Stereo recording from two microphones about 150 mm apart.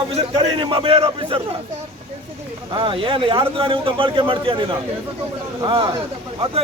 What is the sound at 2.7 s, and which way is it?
Speech, 35° right (ahead or behind).